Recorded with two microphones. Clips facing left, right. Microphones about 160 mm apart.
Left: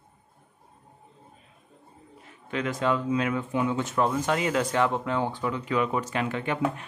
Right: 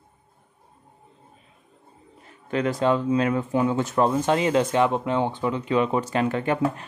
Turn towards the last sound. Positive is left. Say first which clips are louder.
# right 4 dB
turn(degrees=-40)  # may be behind; listen again after turning